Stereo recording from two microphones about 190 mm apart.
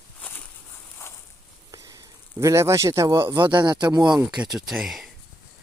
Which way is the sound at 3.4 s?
25° right (ahead or behind).